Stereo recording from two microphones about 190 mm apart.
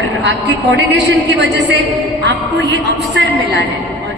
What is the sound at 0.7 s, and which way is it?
A woman's voice, 65° right (ahead or behind).